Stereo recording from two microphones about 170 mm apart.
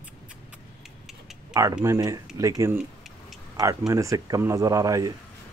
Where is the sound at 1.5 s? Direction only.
20° right (ahead or behind).